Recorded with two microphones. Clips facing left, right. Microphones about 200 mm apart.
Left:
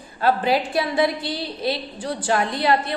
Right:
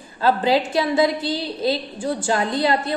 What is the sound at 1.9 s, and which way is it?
Speech, 25° right (ahead or behind).